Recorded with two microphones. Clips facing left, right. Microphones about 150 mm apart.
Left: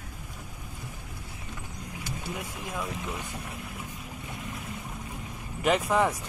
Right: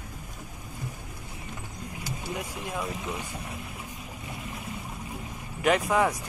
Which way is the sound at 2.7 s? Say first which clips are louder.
Right 1 dB; centre (ahead or behind).